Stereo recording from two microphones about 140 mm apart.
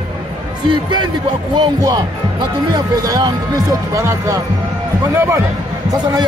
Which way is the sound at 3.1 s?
25° right (ahead or behind).